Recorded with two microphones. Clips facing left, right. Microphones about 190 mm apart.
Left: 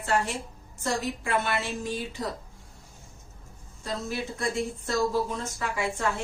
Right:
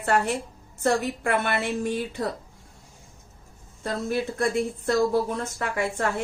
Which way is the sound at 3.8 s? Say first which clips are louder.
Right 5 dB; 55° right (ahead or behind).